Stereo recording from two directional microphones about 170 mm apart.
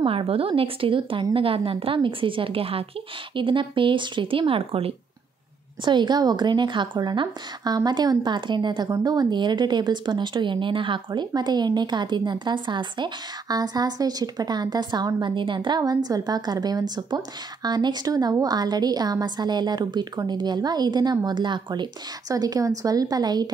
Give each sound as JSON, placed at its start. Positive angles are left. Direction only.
{"t": 0.0, "sound": "a woman's voice", "side_deg": -35}